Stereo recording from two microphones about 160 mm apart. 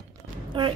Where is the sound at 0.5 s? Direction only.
30° right (ahead or behind).